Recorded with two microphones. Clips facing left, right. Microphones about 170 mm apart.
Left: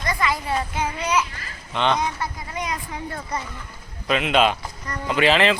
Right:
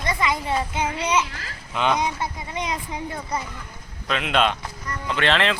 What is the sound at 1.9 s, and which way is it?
Speech, 20° right (ahead or behind).